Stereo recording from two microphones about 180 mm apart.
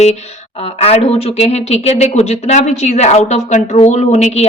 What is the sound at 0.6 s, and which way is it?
Speech, 35° left (ahead or behind).